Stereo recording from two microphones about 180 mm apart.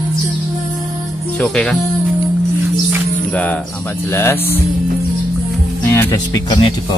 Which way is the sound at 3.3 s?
5° left (ahead or behind).